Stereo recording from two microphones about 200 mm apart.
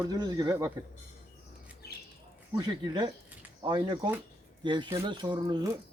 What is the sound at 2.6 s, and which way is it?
Speech, 20° right (ahead or behind).